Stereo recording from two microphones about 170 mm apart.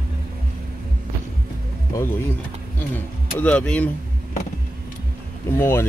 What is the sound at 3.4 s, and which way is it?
Speech, 5° left (ahead or behind).